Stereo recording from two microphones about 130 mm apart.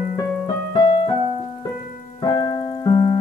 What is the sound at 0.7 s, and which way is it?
Keyboard, 35° left (ahead or behind).